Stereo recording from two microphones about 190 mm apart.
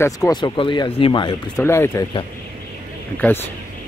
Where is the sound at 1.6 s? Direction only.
15° left (ahead or behind).